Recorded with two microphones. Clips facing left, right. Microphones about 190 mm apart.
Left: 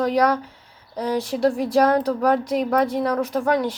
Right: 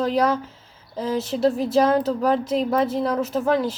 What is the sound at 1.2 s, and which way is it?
Speech, 25° right (ahead or behind).